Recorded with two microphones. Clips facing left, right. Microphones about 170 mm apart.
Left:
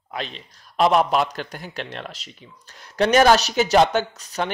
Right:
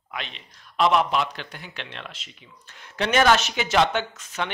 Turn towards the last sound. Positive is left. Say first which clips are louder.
# left 4 dB
turn(degrees=40)  # may be behind; listen again after turning